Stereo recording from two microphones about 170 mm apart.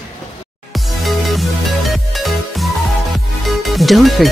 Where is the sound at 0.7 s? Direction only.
Centre (ahead or behind).